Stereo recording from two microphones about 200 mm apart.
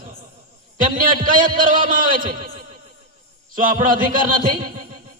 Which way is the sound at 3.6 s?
45° right (ahead or behind).